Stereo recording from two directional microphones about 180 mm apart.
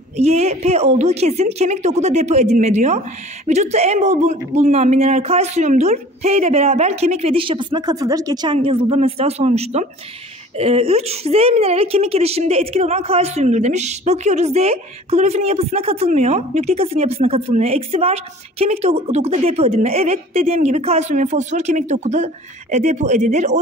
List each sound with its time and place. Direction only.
0.2 s a woman's voice: 35° right (ahead or behind)